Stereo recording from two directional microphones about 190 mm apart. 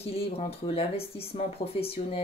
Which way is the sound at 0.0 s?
30° left (ahead or behind).